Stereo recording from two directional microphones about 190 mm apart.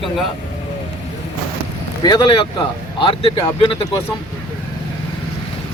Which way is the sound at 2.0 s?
25° left (ahead or behind).